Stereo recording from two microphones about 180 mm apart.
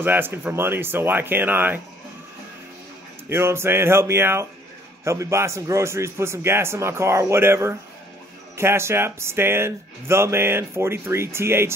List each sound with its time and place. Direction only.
0.0 s speech: 10° right (ahead or behind)
3.3 s speech: 15° right (ahead or behind)